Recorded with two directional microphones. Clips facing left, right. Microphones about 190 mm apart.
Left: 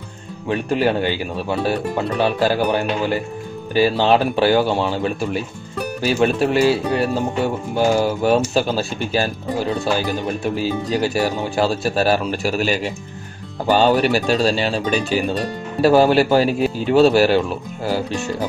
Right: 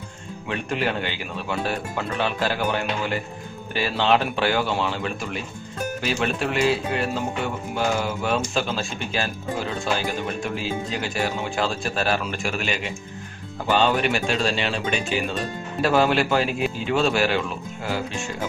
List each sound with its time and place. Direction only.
0.5 s speech: 35° left (ahead or behind)